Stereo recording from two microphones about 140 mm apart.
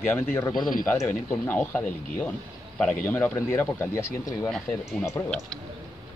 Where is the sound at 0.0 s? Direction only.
15° left (ahead or behind).